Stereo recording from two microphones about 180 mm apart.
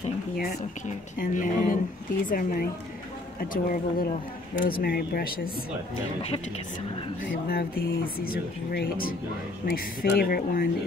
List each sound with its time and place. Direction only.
1.2 s speech: 50° left (ahead or behind)
7.2 s speech: 60° left (ahead or behind)